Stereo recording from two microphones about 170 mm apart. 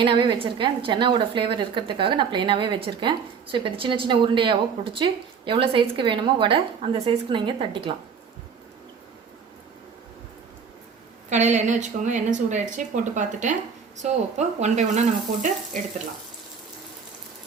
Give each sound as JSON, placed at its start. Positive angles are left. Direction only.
{"t": 0.0, "sound": "a woman's voice", "side_deg": -30}
{"t": 11.3, "sound": "speech", "side_deg": -45}